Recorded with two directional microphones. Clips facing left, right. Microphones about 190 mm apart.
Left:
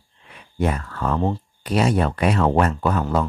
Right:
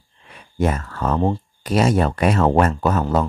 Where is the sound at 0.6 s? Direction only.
45° right (ahead or behind).